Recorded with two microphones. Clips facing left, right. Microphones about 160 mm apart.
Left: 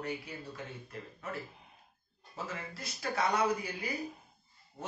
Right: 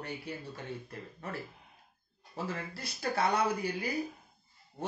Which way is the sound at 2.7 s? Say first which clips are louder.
Right 1 dB; 30° right (ahead or behind).